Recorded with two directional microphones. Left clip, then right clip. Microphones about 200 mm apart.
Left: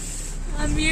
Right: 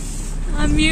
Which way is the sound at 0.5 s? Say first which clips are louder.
Right 6 dB; centre (ahead or behind).